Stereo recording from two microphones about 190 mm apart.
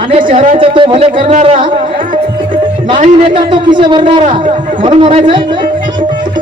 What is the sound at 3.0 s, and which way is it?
Music, 25° right (ahead or behind).